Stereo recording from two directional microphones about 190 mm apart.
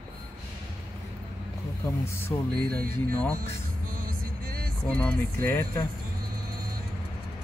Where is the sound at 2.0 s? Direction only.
10° left (ahead or behind).